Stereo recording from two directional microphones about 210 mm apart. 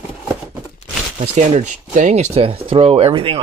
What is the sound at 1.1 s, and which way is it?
Speech, 35° right (ahead or behind).